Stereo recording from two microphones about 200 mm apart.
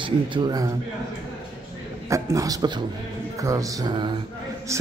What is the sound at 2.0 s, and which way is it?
Speech, 15° right (ahead or behind).